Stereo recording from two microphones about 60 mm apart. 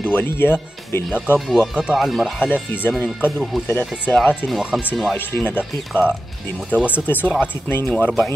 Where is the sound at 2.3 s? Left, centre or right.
Right.